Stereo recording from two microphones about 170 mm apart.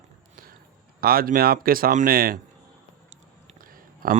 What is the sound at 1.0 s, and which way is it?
Speech, 60° right (ahead or behind).